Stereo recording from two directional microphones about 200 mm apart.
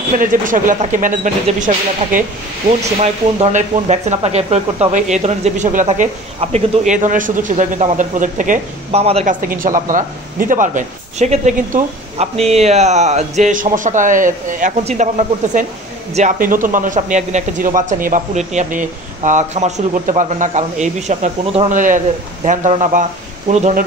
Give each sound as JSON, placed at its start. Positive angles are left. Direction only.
{"t": 0.2, "sound": "speech", "side_deg": -40}